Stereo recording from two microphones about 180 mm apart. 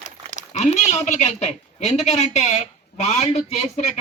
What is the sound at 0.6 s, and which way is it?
A man's voice, 40° left (ahead or behind).